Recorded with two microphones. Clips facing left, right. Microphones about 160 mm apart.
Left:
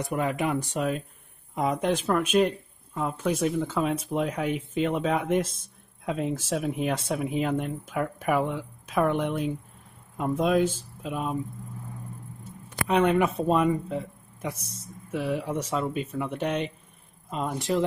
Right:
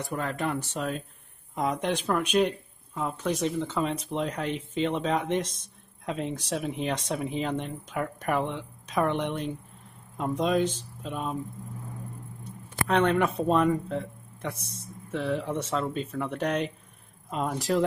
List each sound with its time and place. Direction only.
0.0 s speech: 15° left (ahead or behind)
12.8 s speech: 10° left (ahead or behind)
14.5 s speech: 30° right (ahead or behind)
15.0 s speech: 10° left (ahead or behind)